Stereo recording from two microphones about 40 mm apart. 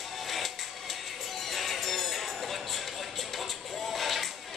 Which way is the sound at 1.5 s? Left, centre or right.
Centre.